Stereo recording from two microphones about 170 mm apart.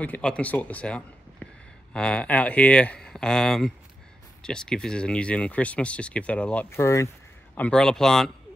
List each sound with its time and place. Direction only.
0.0 s speech: 5° left (ahead or behind)
7.5 s speech: 5° left (ahead or behind)